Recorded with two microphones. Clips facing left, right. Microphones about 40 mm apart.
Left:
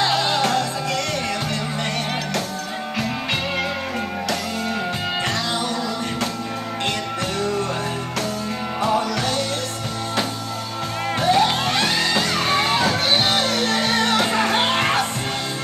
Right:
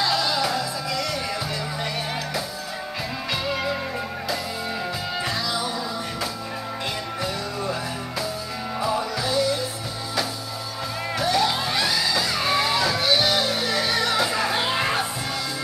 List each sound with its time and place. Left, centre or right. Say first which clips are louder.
0.0 s music: left 3 dB; left
0.5 s music: left 4 dB; left
9.1 s music: even; left
11.1 s music: left 4 dB; left
11.5 s music: left 3 dB; left
11.9 s music: left 3 dB; left
13.4 s music: left 3 dB; left
13.7 s music: left 2 dB; left